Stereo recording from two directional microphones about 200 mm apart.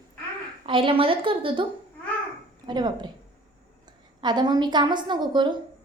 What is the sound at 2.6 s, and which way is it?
A woman's voice, 20° right (ahead or behind).